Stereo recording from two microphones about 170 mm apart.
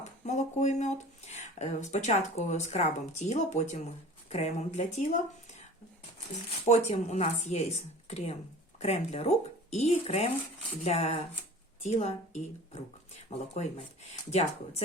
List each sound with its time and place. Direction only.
0.0 s speech: 45° left (ahead or behind)
6.7 s speech: 40° left (ahead or behind)